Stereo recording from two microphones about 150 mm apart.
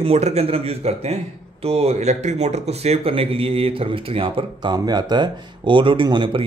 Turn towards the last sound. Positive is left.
turn(degrees=-35)  # may be behind; listen again after turning